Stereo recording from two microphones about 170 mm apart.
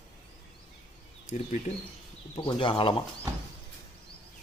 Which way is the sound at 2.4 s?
30° left (ahead or behind).